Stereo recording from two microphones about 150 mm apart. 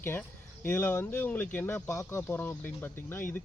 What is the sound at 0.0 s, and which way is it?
Speech, 15° left (ahead or behind).